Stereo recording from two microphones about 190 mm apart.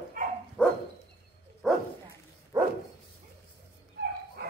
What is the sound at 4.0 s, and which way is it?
Dog, 55° right (ahead or behind).